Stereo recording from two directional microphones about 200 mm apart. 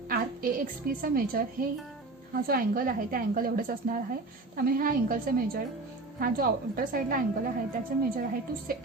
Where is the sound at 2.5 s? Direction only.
45° right (ahead or behind).